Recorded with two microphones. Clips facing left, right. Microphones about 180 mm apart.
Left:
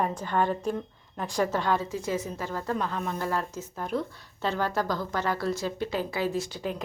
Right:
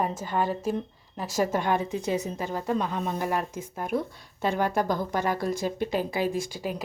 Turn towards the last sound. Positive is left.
turn(degrees=-10)  # may be behind; listen again after turning